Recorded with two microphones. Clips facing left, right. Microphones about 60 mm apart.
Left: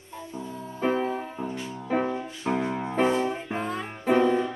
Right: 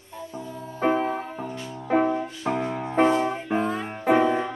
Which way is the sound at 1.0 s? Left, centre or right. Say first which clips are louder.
Right 1 dB; centre.